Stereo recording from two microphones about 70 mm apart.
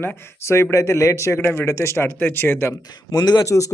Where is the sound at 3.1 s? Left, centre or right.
Left.